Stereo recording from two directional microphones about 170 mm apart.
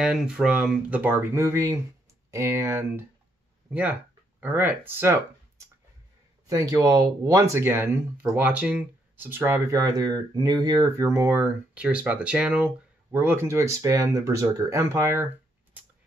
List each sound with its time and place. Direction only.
0.0 s speech: 5° right (ahead or behind)
4.4 s speech: 10° right (ahead or behind)